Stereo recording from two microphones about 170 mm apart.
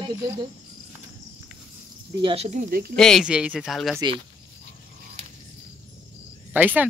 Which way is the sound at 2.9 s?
5° left (ahead or behind).